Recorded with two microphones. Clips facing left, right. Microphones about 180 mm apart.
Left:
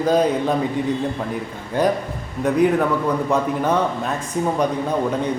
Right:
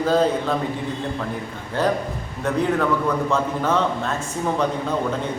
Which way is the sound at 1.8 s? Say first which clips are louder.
Left 2 dB; 15° left (ahead or behind).